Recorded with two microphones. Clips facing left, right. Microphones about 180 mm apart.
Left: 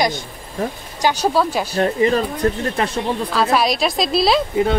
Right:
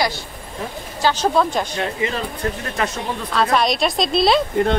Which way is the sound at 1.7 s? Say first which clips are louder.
Left 7 dB; 40° left (ahead or behind).